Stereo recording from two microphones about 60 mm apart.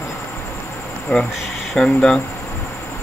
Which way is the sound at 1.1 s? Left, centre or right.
Left.